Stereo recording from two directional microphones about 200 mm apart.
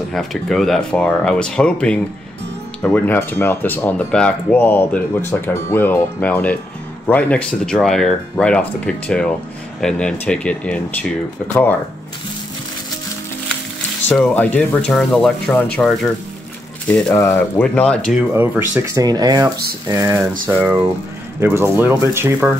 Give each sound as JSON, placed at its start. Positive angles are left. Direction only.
{"t": 0.1, "sound": "speech", "side_deg": 0}
{"t": 14.0, "sound": "speech", "side_deg": 5}
{"t": 18.3, "sound": "speech", "side_deg": -10}